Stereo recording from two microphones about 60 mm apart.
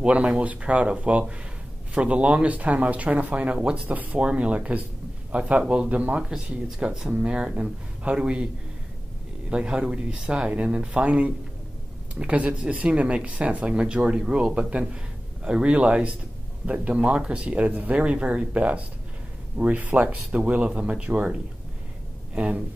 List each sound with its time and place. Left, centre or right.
0.0 s speech: centre
3.9 s a man's voice: right
9.5 s speech: centre